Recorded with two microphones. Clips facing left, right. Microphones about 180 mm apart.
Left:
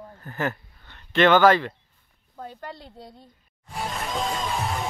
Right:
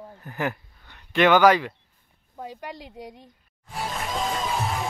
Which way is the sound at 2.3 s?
15° right (ahead or behind).